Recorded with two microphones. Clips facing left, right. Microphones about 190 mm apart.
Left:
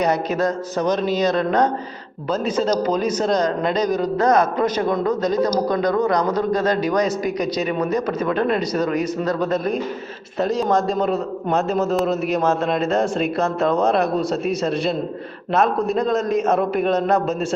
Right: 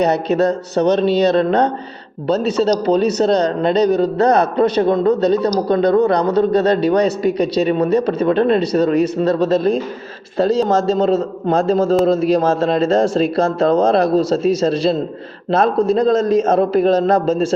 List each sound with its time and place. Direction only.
0.8 s a man's voice: 30° right (ahead or behind)
16.0 s a man's voice: 30° right (ahead or behind)